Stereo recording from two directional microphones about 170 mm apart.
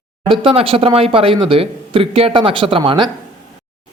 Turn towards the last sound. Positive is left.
turn(degrees=-30)  # may be behind; listen again after turning